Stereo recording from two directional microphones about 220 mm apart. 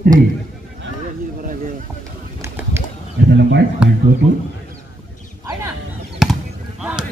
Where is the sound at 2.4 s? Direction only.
10° right (ahead or behind).